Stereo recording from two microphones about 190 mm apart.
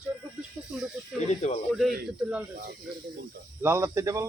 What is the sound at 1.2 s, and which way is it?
Speech, 35° left (ahead or behind).